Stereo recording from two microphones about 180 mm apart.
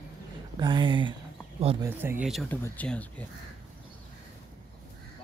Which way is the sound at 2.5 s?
10° left (ahead or behind).